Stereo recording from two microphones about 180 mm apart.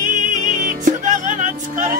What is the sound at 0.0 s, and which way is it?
Music, 45° right (ahead or behind).